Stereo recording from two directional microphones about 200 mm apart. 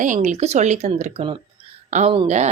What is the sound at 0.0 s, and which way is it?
Speech, 40° right (ahead or behind).